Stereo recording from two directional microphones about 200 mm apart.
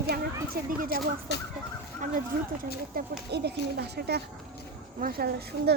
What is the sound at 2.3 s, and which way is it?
Speech, 45° right (ahead or behind).